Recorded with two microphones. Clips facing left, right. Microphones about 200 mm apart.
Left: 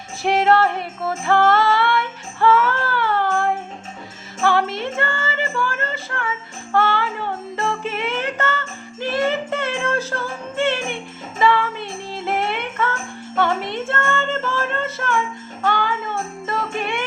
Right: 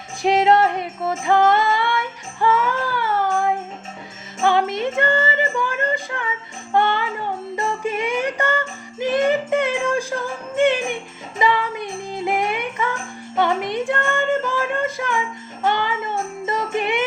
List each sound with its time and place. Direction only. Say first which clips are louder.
0.2 s music: right 1 dB; 20° right (ahead or behind)